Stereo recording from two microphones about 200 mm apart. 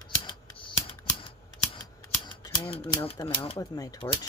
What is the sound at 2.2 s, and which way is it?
Scissors, 25° left (ahead or behind).